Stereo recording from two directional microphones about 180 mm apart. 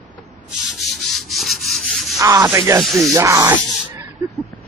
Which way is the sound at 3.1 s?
15° right (ahead or behind).